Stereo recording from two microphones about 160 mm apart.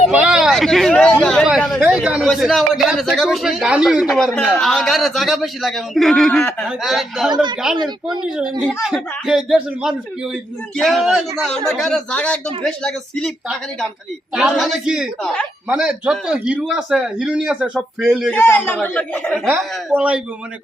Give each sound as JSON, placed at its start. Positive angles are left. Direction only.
{"t": 0.1, "sound": "speech", "side_deg": -5}
{"t": 1.2, "sound": "a sound", "side_deg": 5}
{"t": 2.2, "sound": "speech", "side_deg": 0}
{"t": 7.8, "sound": "speech", "side_deg": -30}
{"t": 8.2, "sound": "speech", "side_deg": -5}
{"t": 18.3, "sound": "a man's voice", "side_deg": 15}
{"t": 19.9, "sound": "a man's voice", "side_deg": -5}